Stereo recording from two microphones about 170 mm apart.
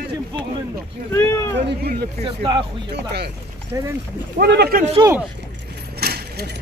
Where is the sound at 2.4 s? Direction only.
30° right (ahead or behind).